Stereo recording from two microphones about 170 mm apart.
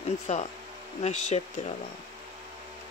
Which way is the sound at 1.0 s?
40° left (ahead or behind).